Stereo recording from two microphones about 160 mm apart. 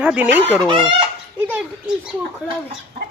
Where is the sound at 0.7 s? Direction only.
30° right (ahead or behind).